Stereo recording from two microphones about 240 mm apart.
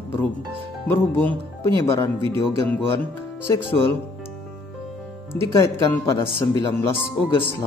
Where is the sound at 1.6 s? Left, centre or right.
Centre.